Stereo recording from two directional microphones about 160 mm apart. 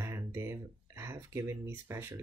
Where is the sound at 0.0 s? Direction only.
15° right (ahead or behind).